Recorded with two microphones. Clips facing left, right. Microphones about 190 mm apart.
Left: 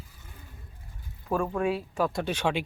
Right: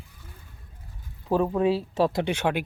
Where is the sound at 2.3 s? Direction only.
10° right (ahead or behind).